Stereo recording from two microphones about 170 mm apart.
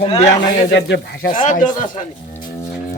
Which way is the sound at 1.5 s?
50° left (ahead or behind).